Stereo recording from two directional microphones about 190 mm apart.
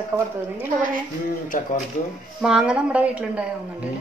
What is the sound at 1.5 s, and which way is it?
Speech, 45° left (ahead or behind).